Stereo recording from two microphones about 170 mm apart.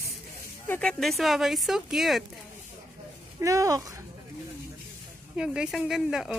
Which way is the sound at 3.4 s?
20° right (ahead or behind).